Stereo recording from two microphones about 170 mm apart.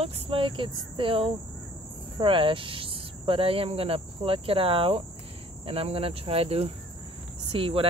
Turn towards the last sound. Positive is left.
turn(degrees=-30)  # may be behind; listen again after turning